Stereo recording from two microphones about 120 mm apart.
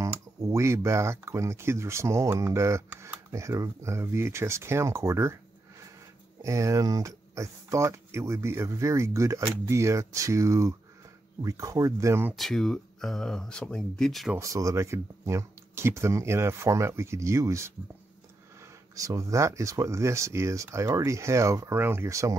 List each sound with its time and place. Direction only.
0.4 s speech: 25° right (ahead or behind)
6.4 s speech: 25° right (ahead or behind)
12.4 s speech: 5° left (ahead or behind)
14.4 s speech: 25° right (ahead or behind)